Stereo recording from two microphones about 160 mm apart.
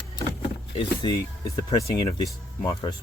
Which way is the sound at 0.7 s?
30° left (ahead or behind).